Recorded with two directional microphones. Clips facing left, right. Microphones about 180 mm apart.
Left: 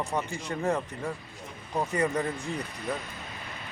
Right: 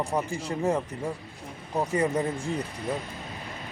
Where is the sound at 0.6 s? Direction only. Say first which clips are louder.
Right 2 dB; 10° right (ahead or behind).